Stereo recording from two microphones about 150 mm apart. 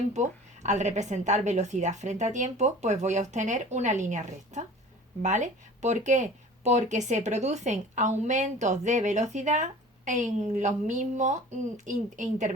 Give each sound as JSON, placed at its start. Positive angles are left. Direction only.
{"t": 0.1, "sound": "a woman's voice", "side_deg": -50}